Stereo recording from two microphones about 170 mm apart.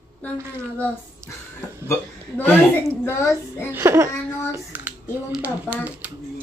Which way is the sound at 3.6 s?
15° right (ahead or behind).